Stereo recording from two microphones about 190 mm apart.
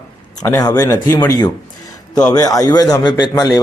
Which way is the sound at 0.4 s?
15° left (ahead or behind).